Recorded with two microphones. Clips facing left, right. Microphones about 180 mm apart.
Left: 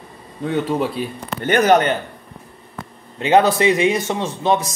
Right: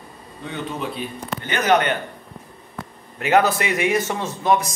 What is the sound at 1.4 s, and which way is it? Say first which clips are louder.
Speech: left 5 dB; 45° left (ahead or behind).